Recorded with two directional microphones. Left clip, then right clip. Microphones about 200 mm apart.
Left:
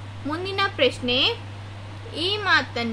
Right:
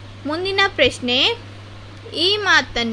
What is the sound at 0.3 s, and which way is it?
A woman's voice, 40° right (ahead or behind).